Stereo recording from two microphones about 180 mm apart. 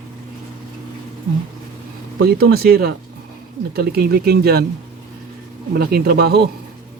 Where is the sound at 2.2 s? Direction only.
60° right (ahead or behind).